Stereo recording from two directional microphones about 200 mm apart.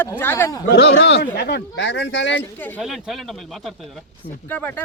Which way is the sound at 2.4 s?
10° left (ahead or behind).